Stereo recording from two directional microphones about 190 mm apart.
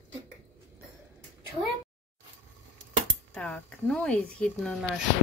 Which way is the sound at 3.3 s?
5° left (ahead or behind).